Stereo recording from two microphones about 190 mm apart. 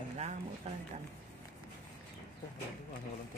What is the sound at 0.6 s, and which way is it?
Speech, 35° right (ahead or behind).